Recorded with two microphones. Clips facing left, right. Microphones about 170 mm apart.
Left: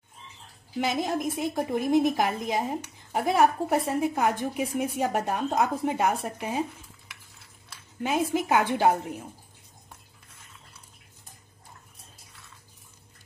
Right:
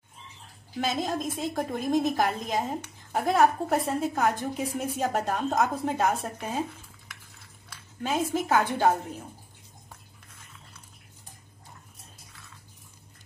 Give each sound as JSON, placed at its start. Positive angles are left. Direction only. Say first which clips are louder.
{"t": 1.0, "sound": "a woman's voice", "louder": "left 2 dB", "side_deg": 15}
{"t": 8.0, "sound": "a woman's voice", "louder": "left 2 dB", "side_deg": 15}